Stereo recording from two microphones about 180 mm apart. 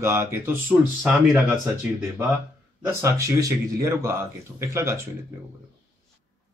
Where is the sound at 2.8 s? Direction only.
15° right (ahead or behind).